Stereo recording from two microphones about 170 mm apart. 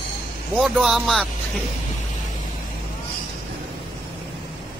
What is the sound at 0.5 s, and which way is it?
Speech, centre (ahead or behind).